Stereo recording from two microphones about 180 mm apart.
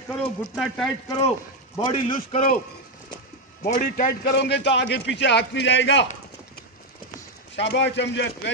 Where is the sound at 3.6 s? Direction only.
60° left (ahead or behind); by 6.0 s 85° left.